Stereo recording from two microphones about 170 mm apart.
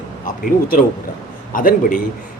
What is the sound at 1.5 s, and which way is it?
Speech, 55° left (ahead or behind).